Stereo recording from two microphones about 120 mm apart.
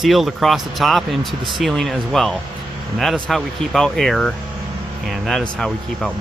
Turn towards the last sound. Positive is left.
turn(degrees=5)  # may be behind; listen again after turning